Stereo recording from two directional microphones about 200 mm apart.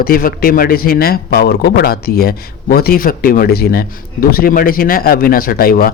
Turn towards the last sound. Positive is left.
turn(degrees=45)  # may be behind; listen again after turning